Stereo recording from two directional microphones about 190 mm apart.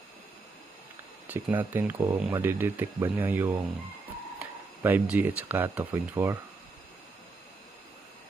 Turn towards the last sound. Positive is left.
turn(degrees=-15)  # may be behind; listen again after turning